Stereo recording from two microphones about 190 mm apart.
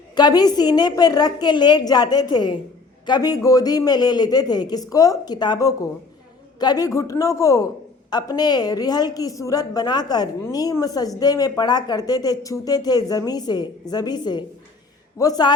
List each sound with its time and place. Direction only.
0.2 s a woman's voice: 20° left (ahead or behind)